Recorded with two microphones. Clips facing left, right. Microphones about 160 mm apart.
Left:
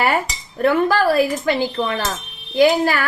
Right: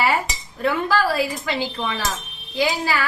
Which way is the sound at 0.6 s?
55° left (ahead or behind).